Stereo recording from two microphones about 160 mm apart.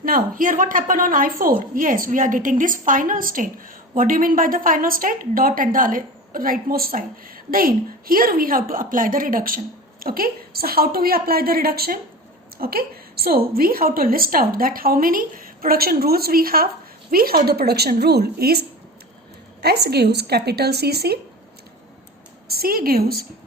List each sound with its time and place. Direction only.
0.0 s a woman's voice: 60° right (ahead or behind); by 18.6 s 75° right (ahead or behind)
19.6 s a woman's voice: 90° right
22.4 s a woman's voice: 70° right (ahead or behind)